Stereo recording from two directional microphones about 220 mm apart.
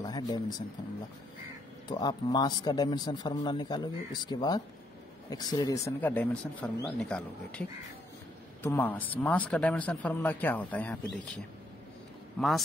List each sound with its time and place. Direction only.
0.0 s speech: 20° left (ahead or behind)
1.9 s speech: 20° left (ahead or behind)
8.6 s speech: 10° left (ahead or behind)
12.4 s speech: centre (ahead or behind)